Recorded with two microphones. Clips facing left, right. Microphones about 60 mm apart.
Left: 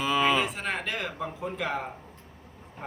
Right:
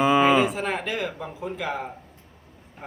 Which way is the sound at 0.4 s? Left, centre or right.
Centre.